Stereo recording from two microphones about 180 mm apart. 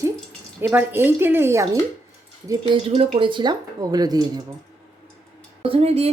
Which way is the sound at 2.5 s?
25° right (ahead or behind).